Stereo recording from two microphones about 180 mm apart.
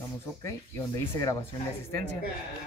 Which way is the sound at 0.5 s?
15° left (ahead or behind).